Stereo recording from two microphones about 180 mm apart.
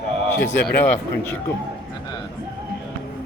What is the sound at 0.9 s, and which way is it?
Speech, 15° left (ahead or behind).